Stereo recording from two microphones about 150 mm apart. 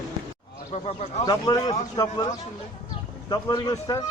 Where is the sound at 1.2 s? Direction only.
30° left (ahead or behind).